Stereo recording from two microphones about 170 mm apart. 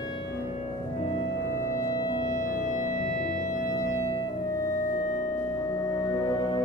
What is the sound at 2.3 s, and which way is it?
Music, 50° left (ahead or behind).